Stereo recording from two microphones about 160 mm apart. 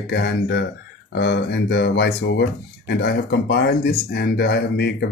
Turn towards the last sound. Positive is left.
turn(degrees=90)